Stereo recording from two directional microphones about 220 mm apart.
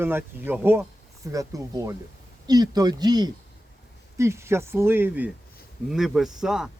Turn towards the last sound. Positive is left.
turn(degrees=0)  # may be behind; listen again after turning